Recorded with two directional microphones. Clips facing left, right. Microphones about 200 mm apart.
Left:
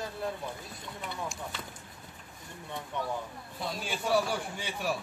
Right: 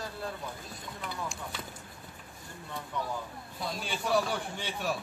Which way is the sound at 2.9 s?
20° left (ahead or behind).